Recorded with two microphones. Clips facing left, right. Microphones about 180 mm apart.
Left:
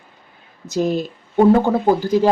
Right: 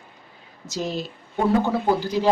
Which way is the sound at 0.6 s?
55° left (ahead or behind).